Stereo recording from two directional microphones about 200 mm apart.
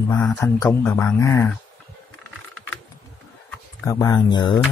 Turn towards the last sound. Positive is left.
turn(degrees=20)  # may be behind; listen again after turning